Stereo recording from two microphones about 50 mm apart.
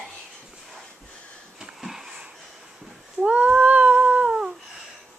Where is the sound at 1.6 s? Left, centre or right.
Centre.